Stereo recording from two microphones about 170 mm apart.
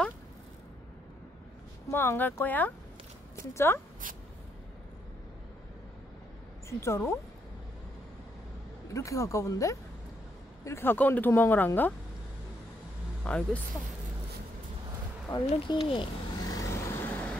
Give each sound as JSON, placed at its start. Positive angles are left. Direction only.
{"t": 1.9, "sound": "speech", "side_deg": 15}
{"t": 6.7, "sound": "speech", "side_deg": 15}
{"t": 8.9, "sound": "speech", "side_deg": 20}
{"t": 13.2, "sound": "speech", "side_deg": 10}
{"t": 15.2, "sound": "vehicle", "side_deg": 25}